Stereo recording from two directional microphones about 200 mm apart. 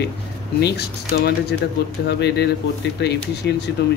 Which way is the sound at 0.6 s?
55° left (ahead or behind).